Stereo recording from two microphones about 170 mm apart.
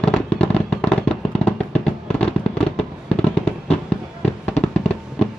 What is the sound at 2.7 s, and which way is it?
Fireworks, 5° left (ahead or behind).